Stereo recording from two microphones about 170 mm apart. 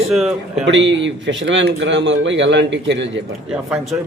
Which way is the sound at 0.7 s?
90° right.